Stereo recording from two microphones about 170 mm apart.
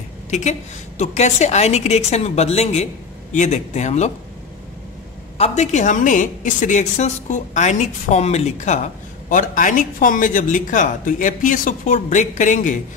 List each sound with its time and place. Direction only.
0.3 s a woman's voice: 40° left (ahead or behind)
5.4 s a woman's voice: 40° left (ahead or behind)